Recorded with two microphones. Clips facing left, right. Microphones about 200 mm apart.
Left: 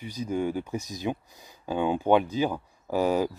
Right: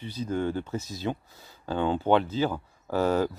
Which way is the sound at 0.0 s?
10° left (ahead or behind).